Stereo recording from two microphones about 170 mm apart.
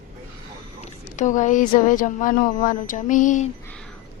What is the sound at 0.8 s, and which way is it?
Speech, 45° left (ahead or behind).